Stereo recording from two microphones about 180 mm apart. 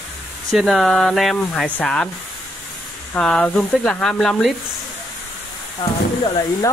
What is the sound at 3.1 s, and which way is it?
Speech, 5° left (ahead or behind).